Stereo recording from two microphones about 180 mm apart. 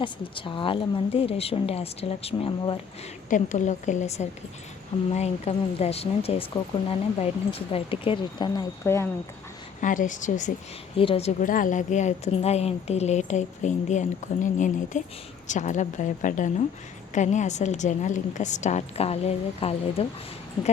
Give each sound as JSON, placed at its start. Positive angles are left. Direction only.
{"t": 0.0, "sound": "a woman's voice", "side_deg": 25}
{"t": 3.2, "sound": "a woman's voice", "side_deg": 45}
{"t": 8.8, "sound": "speech", "side_deg": 15}
{"t": 9.8, "sound": "speech", "side_deg": 45}
{"t": 10.9, "sound": "a woman's voice", "side_deg": 30}